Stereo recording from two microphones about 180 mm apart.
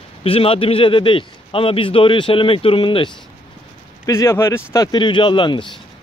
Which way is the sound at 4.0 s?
15° left (ahead or behind).